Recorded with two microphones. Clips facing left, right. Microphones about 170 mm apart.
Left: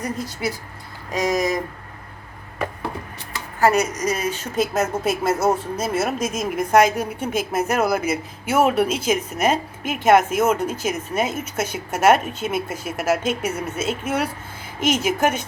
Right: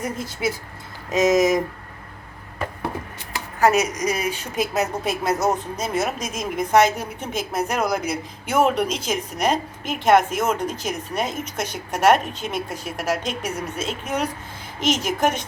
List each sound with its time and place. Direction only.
0.0 s speech: 20° right (ahead or behind)
3.6 s speech: 5° right (ahead or behind)
5.0 s a woman's voice: 5° left (ahead or behind)